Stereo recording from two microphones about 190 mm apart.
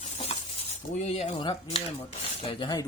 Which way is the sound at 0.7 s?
40° left (ahead or behind).